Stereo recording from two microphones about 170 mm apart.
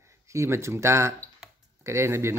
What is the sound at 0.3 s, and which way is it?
Speech, 15° right (ahead or behind).